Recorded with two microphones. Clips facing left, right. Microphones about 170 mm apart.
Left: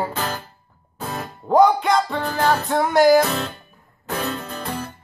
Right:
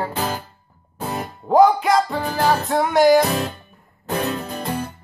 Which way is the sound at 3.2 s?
15° right (ahead or behind).